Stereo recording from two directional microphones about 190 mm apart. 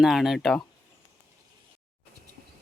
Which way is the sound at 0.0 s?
Centre (ahead or behind).